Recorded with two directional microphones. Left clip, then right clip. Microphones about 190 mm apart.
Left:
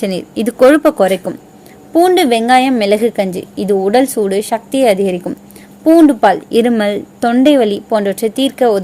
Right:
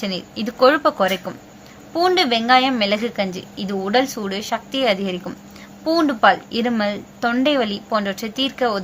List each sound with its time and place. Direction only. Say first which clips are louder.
0.0 s a woman's voice: left 9 dB; 50° left (ahead or behind)